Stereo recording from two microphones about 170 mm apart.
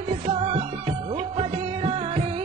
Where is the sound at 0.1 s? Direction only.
35° right (ahead or behind).